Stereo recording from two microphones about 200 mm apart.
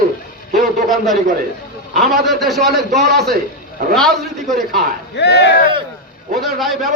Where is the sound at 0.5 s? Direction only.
Centre (ahead or behind).